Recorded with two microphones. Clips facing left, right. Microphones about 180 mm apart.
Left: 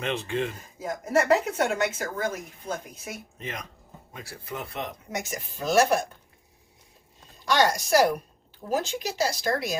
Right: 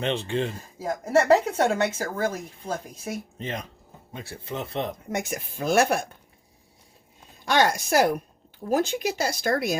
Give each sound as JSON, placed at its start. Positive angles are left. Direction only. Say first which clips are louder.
{"t": 0.0, "sound": "speech", "louder": "right 2 dB", "side_deg": -30}
{"t": 5.1, "sound": "speech", "louder": "right 3 dB", "side_deg": -55}
{"t": 7.4, "sound": "speech", "louder": "right 1 dB", "side_deg": -55}